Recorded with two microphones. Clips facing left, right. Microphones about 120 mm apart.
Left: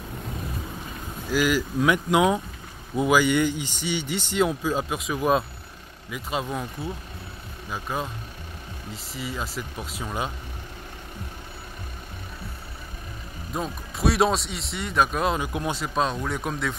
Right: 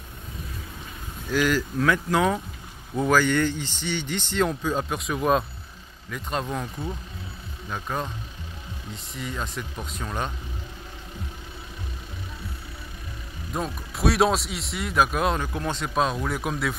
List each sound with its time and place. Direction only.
1.3 s speech: 10° left (ahead or behind)
13.5 s speech: centre (ahead or behind)
15.4 s speech: 15° left (ahead or behind)
15.8 s speech: centre (ahead or behind)